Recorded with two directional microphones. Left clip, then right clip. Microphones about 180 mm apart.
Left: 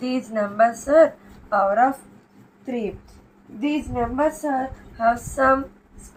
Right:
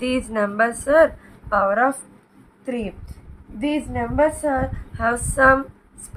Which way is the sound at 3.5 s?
40° right (ahead or behind).